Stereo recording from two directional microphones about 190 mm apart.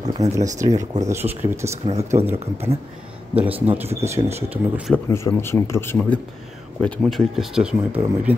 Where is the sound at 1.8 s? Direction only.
35° right (ahead or behind).